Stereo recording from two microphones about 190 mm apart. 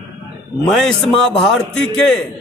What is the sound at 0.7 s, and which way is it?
A man's voice, centre (ahead or behind).